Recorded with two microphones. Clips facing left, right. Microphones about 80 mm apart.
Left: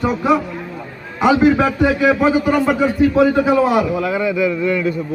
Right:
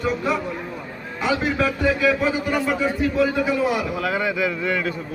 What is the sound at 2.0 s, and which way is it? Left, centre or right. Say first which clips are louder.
Speech: left 7 dB; left.